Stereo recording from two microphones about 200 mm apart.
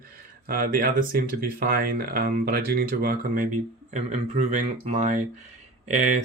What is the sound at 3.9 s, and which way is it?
Speech, 35° right (ahead or behind).